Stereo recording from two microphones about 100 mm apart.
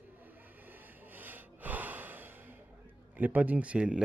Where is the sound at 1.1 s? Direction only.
20° right (ahead or behind).